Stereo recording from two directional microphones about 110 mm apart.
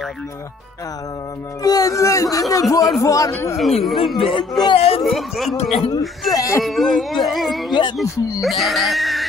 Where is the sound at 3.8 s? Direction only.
Centre (ahead or behind).